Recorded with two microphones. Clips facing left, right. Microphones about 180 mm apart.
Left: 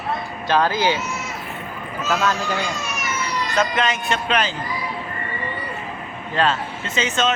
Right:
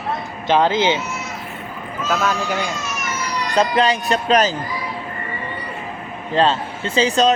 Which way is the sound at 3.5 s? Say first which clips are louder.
Right 5 dB; 35° right (ahead or behind).